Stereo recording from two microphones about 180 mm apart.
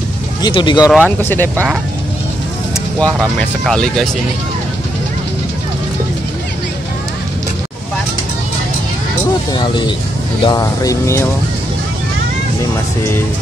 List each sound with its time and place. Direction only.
0.4 s speech: 25° left (ahead or behind)
0.8 s speech: 5° right (ahead or behind)
3.0 s speech: 5° left (ahead or behind)
9.5 s speech: 25° left (ahead or behind)